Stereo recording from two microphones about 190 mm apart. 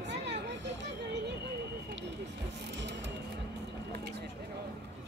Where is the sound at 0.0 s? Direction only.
65° right (ahead or behind).